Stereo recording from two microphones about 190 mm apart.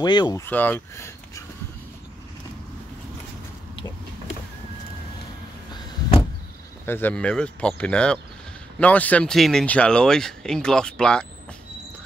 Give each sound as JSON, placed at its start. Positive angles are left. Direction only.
{"t": 0.0, "sound": "speech", "side_deg": 20}
{"t": 0.5, "sound": "speech", "side_deg": 10}
{"t": 6.9, "sound": "speech", "side_deg": 10}